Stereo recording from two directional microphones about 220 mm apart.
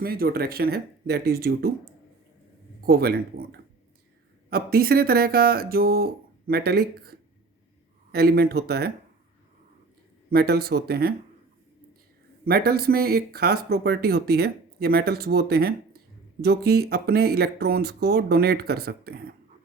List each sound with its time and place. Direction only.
0.0 s speech: 40° right (ahead or behind)
4.4 s speech: 45° right (ahead or behind)
10.2 s speech: 45° right (ahead or behind)
12.5 s speech: 45° right (ahead or behind)